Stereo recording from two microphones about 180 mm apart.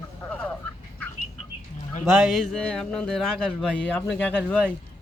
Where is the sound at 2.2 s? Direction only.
Centre (ahead or behind).